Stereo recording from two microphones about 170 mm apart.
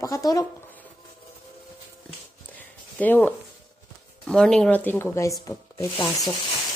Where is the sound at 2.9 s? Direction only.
10° left (ahead or behind).